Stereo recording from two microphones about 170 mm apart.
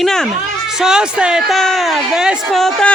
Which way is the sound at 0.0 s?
5° left (ahead or behind).